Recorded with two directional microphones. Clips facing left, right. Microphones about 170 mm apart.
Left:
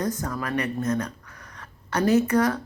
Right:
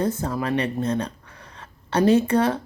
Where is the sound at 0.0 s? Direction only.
25° right (ahead or behind).